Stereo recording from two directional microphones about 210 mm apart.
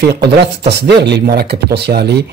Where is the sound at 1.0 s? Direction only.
50° right (ahead or behind).